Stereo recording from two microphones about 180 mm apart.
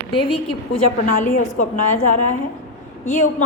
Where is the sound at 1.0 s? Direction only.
50° left (ahead or behind).